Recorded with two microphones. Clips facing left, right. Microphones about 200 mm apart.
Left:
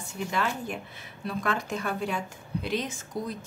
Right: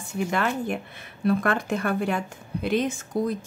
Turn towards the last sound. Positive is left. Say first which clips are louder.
# right 8 dB
turn(degrees=-55)  # may be behind; listen again after turning